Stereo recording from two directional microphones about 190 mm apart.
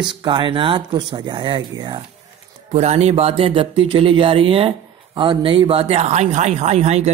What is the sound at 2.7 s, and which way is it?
Speech, 35° right (ahead or behind).